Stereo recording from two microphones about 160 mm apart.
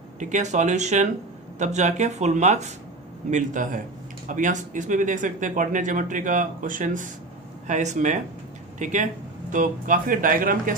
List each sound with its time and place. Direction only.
0.2 s speech: 50° right (ahead or behind)